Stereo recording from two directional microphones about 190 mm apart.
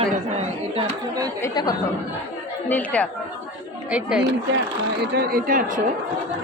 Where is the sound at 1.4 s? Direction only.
20° left (ahead or behind).